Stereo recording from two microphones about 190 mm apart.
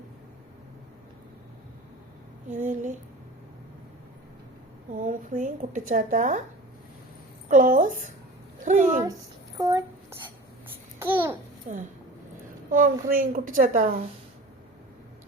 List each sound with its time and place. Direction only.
2.5 s a woman's voice: 40° right (ahead or behind)
4.9 s a woman's voice: 45° right (ahead or behind)
7.4 s a woman's voice: 45° right (ahead or behind)
9.6 s a child's voice: 20° right (ahead or behind)
11.7 s a woman's voice: 40° right (ahead or behind)